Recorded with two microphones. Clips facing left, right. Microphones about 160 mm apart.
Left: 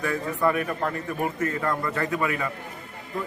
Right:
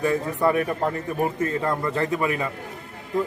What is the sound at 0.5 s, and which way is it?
A man's voice, 30° right (ahead or behind).